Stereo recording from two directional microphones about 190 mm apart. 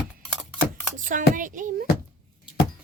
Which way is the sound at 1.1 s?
45° right (ahead or behind).